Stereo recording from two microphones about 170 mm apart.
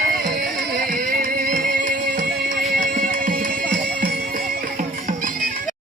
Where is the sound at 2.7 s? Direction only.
50° right (ahead or behind).